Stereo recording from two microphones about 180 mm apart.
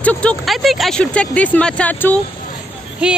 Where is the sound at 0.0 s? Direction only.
5° left (ahead or behind).